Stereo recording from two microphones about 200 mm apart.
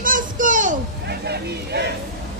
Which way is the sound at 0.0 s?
40° right (ahead or behind).